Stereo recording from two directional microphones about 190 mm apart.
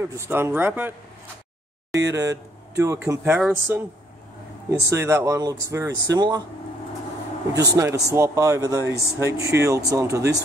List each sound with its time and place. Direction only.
0.0 s speech: 10° right (ahead or behind)
2.0 s speech: 20° right (ahead or behind)
4.8 s speech: 15° right (ahead or behind)
7.5 s speech: 20° right (ahead or behind)